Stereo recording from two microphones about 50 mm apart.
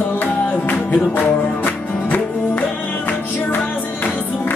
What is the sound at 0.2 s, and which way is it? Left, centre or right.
Music, left.